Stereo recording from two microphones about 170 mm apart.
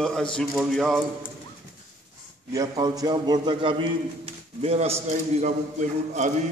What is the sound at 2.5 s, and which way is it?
A man's voice, 20° right (ahead or behind).